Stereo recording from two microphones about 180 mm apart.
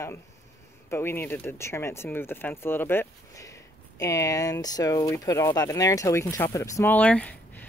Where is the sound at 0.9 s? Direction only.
15° left (ahead or behind).